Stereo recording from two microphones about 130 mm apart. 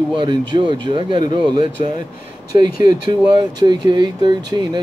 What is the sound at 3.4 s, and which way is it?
Speech, 30° right (ahead or behind).